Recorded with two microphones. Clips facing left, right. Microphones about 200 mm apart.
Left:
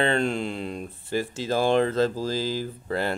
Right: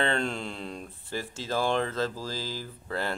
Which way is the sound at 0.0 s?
15° left (ahead or behind).